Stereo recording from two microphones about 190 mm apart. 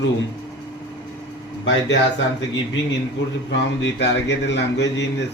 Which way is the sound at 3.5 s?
70° left (ahead or behind).